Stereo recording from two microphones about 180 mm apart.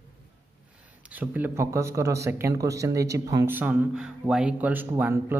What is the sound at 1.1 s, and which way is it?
Speech, 10° right (ahead or behind).